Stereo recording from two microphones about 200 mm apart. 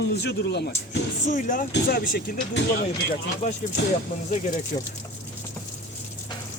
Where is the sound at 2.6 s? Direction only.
60° left (ahead or behind).